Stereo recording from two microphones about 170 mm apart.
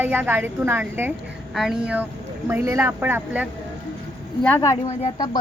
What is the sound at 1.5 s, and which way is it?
A woman's voice, centre (ahead or behind).